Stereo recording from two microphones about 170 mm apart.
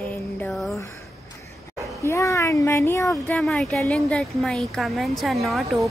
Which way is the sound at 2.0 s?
15° left (ahead or behind).